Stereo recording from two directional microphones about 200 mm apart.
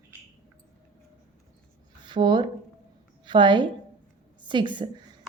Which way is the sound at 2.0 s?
20° right (ahead or behind).